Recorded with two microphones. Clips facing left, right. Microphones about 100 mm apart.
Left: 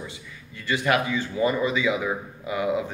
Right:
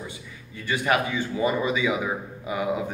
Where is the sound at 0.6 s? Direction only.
20° right (ahead or behind).